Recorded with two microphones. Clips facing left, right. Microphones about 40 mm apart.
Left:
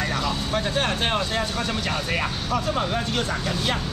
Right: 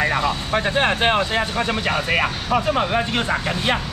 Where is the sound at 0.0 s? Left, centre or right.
Right.